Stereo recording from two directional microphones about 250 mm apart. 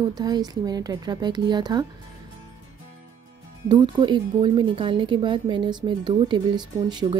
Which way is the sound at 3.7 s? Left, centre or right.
Centre.